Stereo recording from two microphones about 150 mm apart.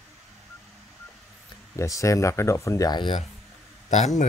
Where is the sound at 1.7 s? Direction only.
20° left (ahead or behind).